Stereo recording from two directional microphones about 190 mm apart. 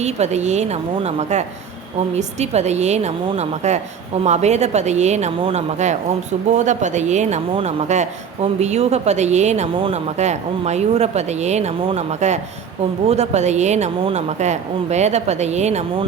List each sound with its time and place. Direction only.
0.0 s speech: 35° right (ahead or behind)